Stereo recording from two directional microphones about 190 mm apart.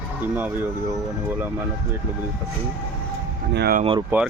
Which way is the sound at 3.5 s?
55° right (ahead or behind).